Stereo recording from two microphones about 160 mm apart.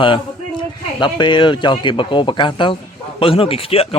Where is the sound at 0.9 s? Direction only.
30° left (ahead or behind).